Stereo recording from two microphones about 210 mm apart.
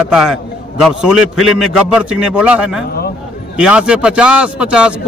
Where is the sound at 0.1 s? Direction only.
5° right (ahead or behind).